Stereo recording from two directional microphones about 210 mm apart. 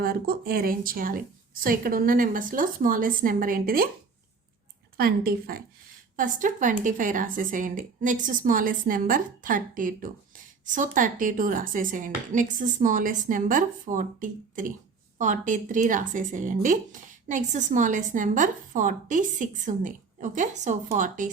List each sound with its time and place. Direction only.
0.0 s speech: 45° right (ahead or behind)
4.9 s speech: 45° right (ahead or behind)